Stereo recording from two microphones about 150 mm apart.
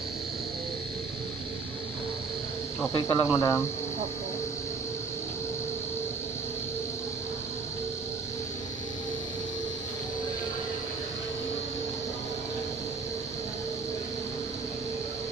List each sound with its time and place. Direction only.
2.9 s speech: 25° left (ahead or behind)